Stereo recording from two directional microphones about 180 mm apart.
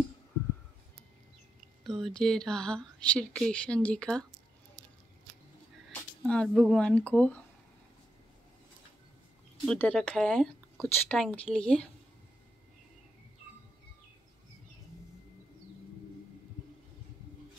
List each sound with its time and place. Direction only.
1.9 s speech: centre (ahead or behind)
5.9 s a sound: 5° left (ahead or behind)
6.7 s speech: 5° left (ahead or behind)
9.7 s speech: 5° left (ahead or behind)